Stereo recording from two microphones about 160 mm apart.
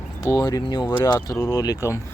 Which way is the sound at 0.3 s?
25° left (ahead or behind).